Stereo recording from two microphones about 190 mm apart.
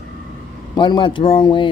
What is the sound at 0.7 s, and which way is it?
Speech, 25° left (ahead or behind).